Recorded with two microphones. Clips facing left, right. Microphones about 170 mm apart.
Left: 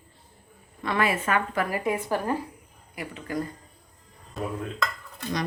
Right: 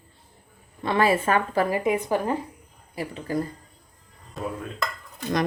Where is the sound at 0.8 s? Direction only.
30° right (ahead or behind).